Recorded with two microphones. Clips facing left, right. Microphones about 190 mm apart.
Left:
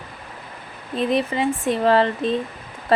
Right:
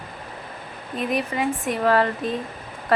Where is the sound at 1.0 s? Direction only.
25° left (ahead or behind).